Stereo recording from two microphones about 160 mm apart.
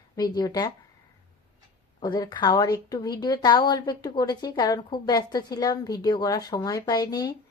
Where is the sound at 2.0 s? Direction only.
25° left (ahead or behind).